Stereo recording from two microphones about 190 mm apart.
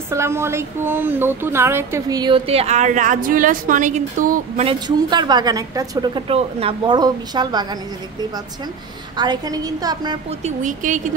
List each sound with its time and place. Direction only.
0.1 s a woman's voice: 15° right (ahead or behind); by 4.6 s 40° right (ahead or behind)
4.6 s a woman's voice: 25° right (ahead or behind)
9.1 s a woman's voice: 20° right (ahead or behind)
10.4 s a woman's voice: 45° right (ahead or behind)